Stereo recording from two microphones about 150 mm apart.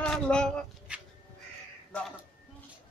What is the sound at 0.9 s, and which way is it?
Crow, 5° right (ahead or behind).